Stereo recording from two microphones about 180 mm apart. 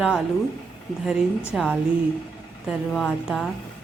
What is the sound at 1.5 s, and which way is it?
Speech, centre (ahead or behind).